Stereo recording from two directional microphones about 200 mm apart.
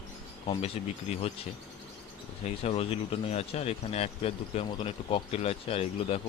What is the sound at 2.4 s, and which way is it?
Speech, 30° left (ahead or behind).